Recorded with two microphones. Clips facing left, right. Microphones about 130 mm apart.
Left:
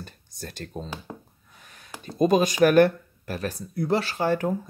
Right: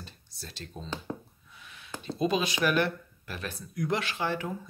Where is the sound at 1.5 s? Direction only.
45° left (ahead or behind).